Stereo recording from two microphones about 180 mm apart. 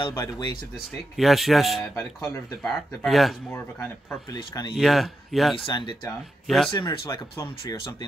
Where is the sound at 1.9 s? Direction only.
15° left (ahead or behind).